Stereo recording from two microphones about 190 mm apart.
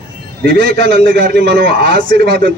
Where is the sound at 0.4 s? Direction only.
65° right (ahead or behind).